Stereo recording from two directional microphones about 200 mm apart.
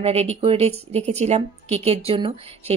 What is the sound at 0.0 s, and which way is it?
Speech, 30° right (ahead or behind).